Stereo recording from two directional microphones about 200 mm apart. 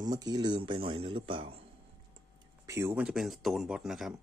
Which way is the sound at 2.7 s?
10° right (ahead or behind).